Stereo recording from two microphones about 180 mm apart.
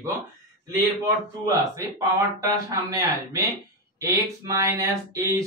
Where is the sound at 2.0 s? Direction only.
20° right (ahead or behind).